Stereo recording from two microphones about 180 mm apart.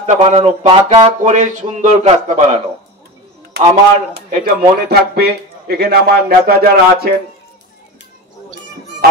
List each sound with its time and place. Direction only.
0.0 s speech: 35° right (ahead or behind)
4.3 s a man's voice: 55° right (ahead or behind)